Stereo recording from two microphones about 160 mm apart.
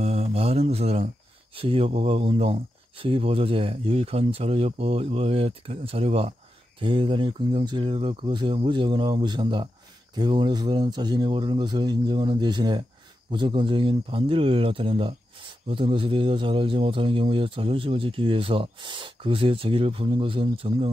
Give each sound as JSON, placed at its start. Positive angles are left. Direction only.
{"t": 0.0, "sound": "speech", "side_deg": -40}